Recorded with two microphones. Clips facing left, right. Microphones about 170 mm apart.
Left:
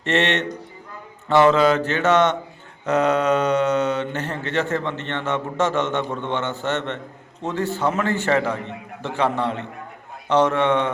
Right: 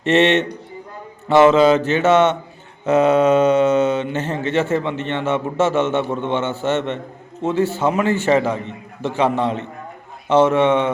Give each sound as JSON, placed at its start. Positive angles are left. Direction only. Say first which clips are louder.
{"t": 0.0, "sound": "a man's voice", "louder": "right 6 dB", "side_deg": -15}